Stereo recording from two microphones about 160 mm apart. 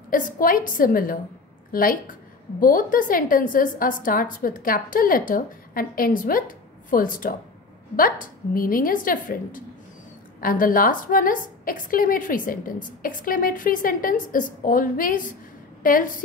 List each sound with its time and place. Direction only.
0.1 s a woman's voice: 60° left (ahead or behind)